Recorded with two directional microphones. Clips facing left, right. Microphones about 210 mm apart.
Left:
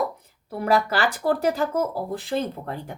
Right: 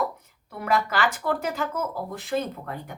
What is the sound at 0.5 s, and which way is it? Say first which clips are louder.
A woman's voice: left 4 dB; 35° left (ahead or behind).